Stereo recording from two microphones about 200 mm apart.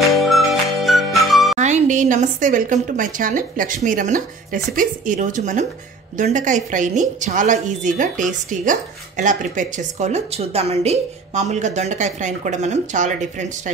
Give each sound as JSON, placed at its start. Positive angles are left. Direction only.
{"t": 0.0, "sound": "music", "side_deg": 0}
{"t": 1.6, "sound": "a woman's voice", "side_deg": -35}